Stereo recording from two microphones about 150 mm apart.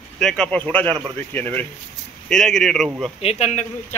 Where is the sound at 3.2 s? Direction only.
45° left (ahead or behind).